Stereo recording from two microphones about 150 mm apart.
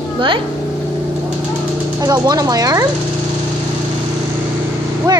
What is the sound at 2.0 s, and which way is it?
Speech, 25° right (ahead or behind).